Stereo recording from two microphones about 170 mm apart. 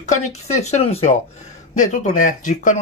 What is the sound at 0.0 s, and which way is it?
Speech, 40° left (ahead or behind).